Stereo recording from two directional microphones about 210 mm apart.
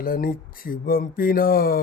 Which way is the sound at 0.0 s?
45° left (ahead or behind).